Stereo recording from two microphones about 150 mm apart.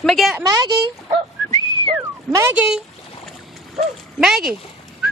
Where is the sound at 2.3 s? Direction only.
15° right (ahead or behind).